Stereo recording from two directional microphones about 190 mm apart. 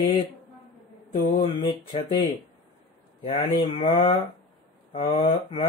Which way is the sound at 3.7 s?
30° left (ahead or behind).